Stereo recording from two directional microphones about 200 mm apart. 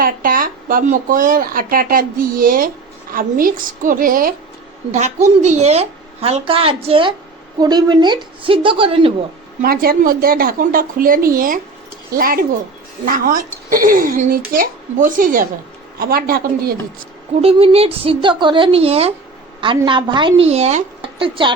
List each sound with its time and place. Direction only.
0.0 s a woman's voice: 45° right (ahead or behind); by 9.1 s 25° right (ahead or behind)
9.6 s speech: 45° right (ahead or behind)
17.4 s a woman's voice: 30° right (ahead or behind)